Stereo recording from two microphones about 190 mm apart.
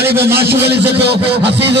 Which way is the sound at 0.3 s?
55° right (ahead or behind).